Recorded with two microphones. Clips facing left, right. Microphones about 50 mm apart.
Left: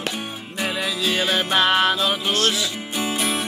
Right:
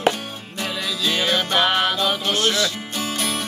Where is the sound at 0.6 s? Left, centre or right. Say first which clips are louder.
Left 1 dB; centre.